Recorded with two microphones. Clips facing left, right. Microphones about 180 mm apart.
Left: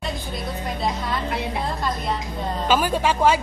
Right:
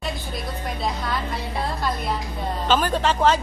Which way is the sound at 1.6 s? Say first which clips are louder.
Even; centre (ahead or behind).